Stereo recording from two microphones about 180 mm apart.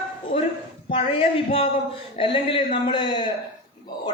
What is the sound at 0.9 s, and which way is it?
A man's voice, 30° left (ahead or behind).